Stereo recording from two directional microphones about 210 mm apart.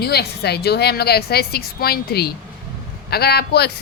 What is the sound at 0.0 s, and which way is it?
Speech, 50° left (ahead or behind).